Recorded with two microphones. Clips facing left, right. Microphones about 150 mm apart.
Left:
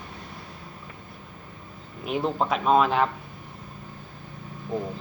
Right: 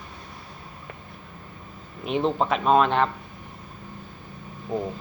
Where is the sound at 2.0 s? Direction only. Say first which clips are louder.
Right 2 dB; 5° left (ahead or behind).